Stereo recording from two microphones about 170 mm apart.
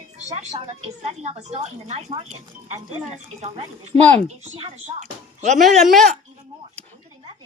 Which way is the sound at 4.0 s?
10° left (ahead or behind).